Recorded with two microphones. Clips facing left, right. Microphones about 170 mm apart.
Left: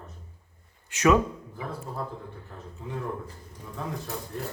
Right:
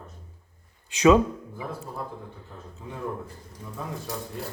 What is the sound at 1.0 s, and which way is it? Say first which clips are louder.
Speech: right 4 dB; 20° right (ahead or behind).